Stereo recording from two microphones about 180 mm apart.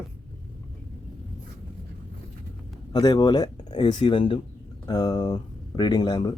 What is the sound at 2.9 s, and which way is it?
Speech, 25° left (ahead or behind).